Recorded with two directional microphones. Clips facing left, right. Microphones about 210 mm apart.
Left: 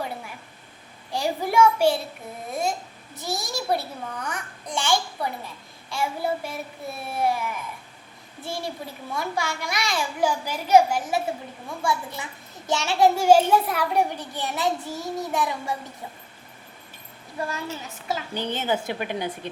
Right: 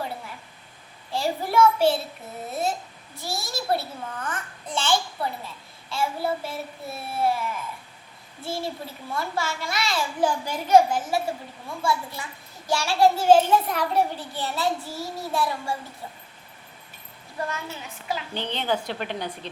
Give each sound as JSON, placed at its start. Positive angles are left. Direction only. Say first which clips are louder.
{"t": 1.1, "sound": "a child's voice", "louder": "left 1 dB", "side_deg": 15}
{"t": 18.1, "sound": "a woman's voice", "louder": "left 2 dB", "side_deg": 45}
{"t": 18.6, "sound": "a child's voice", "louder": "right 1 dB", "side_deg": 5}